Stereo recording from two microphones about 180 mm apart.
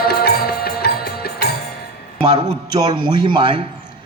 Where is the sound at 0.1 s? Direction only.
60° left (ahead or behind).